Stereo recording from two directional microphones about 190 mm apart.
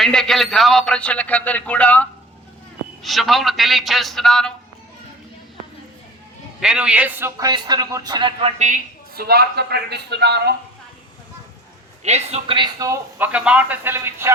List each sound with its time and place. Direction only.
0.0 s a man's voice: centre (ahead or behind)
6.6 s a man's voice: 5° right (ahead or behind); by 8.8 s 35° right (ahead or behind)
9.1 s speech: 55° right (ahead or behind)
12.0 s speech: 35° right (ahead or behind); by 14.3 s 10° right (ahead or behind)